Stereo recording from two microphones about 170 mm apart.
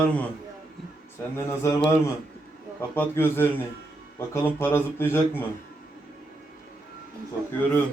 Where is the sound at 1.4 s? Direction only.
15° left (ahead or behind).